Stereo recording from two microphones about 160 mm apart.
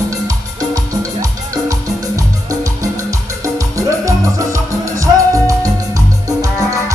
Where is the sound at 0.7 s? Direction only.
20° right (ahead or behind).